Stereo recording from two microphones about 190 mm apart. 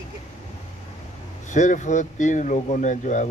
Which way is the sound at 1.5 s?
40° left (ahead or behind).